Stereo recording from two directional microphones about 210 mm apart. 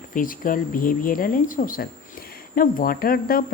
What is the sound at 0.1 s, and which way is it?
Speech, 40° left (ahead or behind).